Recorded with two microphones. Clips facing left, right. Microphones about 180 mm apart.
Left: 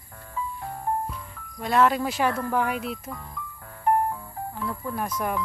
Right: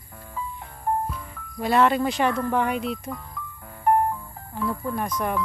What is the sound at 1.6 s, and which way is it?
Speech, centre (ahead or behind).